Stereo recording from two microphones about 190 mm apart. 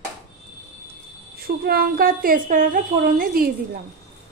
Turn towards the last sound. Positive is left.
turn(degrees=-50)  # may be behind; listen again after turning